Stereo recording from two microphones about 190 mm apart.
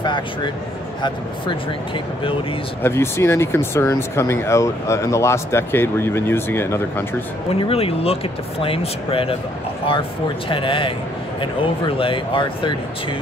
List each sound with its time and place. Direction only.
0.0 s speech: 25° left (ahead or behind)
2.8 s speech: 15° left (ahead or behind)
7.6 s speech: 30° left (ahead or behind)
10.5 s speech: 25° left (ahead or behind)